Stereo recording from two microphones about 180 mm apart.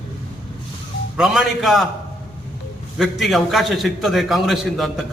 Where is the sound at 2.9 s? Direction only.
Centre (ahead or behind).